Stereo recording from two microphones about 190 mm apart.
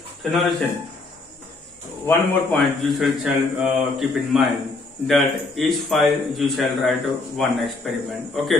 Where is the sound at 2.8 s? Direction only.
Centre (ahead or behind).